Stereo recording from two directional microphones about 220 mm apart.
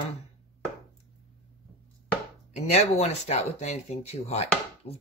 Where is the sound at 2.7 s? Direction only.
30° left (ahead or behind).